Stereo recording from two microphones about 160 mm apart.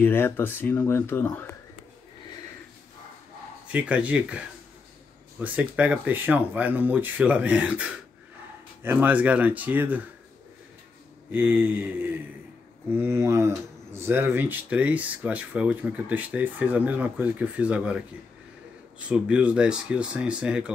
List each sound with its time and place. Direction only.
0.0 s speech: 15° left (ahead or behind)
3.6 s speech: 5° right (ahead or behind)
5.4 s speech: 10° right (ahead or behind)
11.3 s speech: 10° right (ahead or behind)
19.0 s speech: 5° right (ahead or behind)